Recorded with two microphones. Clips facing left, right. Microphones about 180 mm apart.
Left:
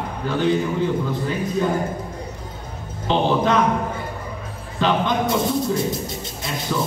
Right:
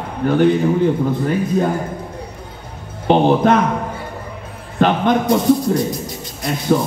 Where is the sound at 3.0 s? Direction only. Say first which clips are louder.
Right 6 dB; 55° right (ahead or behind).